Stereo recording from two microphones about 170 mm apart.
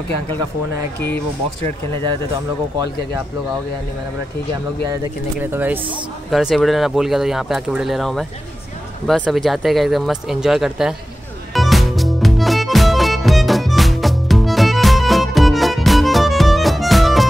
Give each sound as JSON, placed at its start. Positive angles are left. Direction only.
{"t": 5.4, "sound": "speech", "side_deg": -10}
{"t": 6.3, "sound": "speech", "side_deg": 0}
{"t": 11.5, "sound": "music", "side_deg": 0}